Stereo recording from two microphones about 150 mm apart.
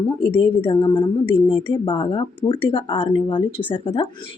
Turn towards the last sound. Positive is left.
turn(degrees=35)  # may be behind; listen again after turning